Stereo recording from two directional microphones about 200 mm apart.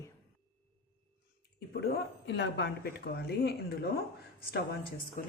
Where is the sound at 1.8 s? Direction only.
55° left (ahead or behind).